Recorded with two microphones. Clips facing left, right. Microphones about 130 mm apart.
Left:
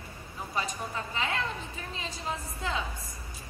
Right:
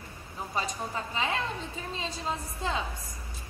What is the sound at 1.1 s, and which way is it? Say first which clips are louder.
Speech: right 2 dB; 25° right (ahead or behind).